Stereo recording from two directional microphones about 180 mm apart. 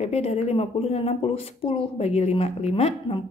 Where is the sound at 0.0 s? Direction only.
35° left (ahead or behind).